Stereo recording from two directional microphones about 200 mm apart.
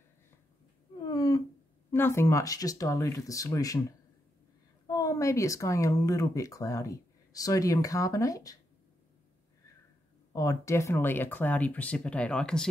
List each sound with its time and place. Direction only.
1.0 s a sound: 20° left (ahead or behind)
1.9 s speech: 10° left (ahead or behind)
4.8 s speech: 15° left (ahead or behind)
10.3 s speech: 15° left (ahead or behind)